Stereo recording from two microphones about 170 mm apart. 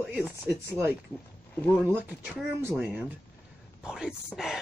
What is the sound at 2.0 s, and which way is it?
Speech, 10° right (ahead or behind).